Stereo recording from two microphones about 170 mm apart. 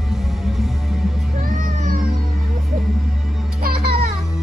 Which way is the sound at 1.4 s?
45° right (ahead or behind).